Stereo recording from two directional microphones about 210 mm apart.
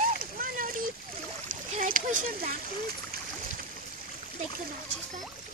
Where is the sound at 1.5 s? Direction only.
40° right (ahead or behind).